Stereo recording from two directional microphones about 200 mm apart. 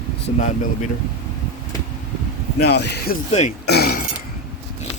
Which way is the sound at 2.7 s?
55° left (ahead or behind).